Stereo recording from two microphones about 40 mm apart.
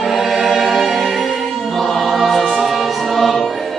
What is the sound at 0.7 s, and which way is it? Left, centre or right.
Music, centre.